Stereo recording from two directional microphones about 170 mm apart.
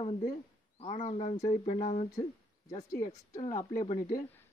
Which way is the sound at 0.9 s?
35° left (ahead or behind).